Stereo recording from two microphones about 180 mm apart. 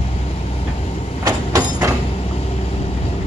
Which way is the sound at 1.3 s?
20° right (ahead or behind).